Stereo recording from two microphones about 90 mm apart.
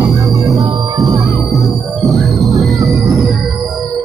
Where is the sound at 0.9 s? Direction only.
45° right (ahead or behind).